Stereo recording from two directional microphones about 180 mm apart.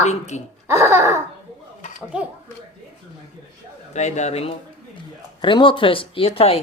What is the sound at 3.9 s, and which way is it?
Speech, 40° left (ahead or behind).